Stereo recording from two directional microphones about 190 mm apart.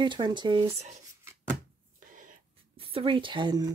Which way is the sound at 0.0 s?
25° right (ahead or behind).